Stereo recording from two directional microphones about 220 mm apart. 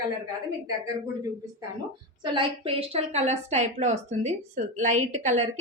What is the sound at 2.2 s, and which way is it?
A woman's voice, 25° right (ahead or behind).